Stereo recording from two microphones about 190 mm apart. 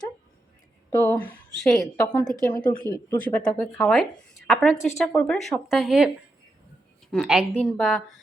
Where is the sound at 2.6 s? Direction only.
25° left (ahead or behind).